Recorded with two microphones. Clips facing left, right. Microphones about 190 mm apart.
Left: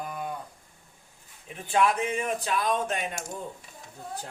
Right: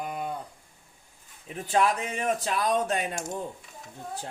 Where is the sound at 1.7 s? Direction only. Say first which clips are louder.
Left 1 dB; 40° right (ahead or behind).